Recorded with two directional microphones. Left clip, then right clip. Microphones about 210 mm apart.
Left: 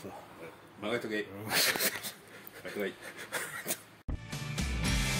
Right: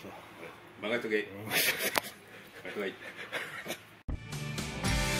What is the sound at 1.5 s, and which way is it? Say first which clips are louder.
Speech: left 2 dB; 5° left (ahead or behind).